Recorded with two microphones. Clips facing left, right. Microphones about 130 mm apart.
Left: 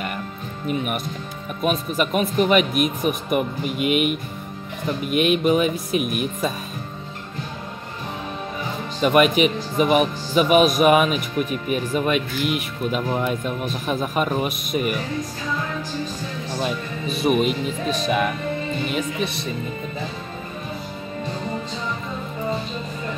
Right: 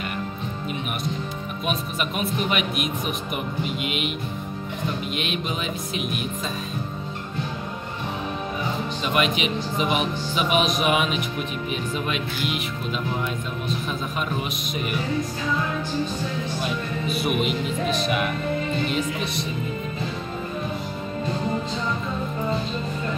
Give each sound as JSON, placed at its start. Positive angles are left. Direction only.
{"t": 1.6, "sound": "speech", "side_deg": 50}
{"t": 5.1, "sound": "speech", "side_deg": 50}
{"t": 9.0, "sound": "speech", "side_deg": 50}
{"t": 17.2, "sound": "speech", "side_deg": 40}